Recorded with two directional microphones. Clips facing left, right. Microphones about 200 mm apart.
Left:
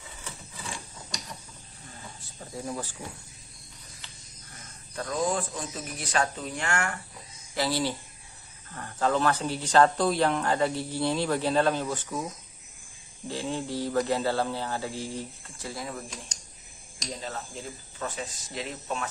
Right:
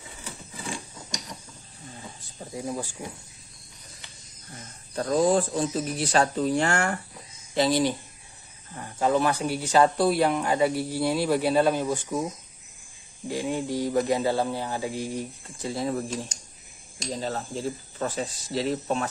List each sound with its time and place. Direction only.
2.5 s speech: 15° right (ahead or behind)
4.9 s speech: 35° right (ahead or behind)
7.5 s speech: 20° right (ahead or behind)
13.3 s speech: 15° right (ahead or behind)
15.7 s speech: 30° right (ahead or behind)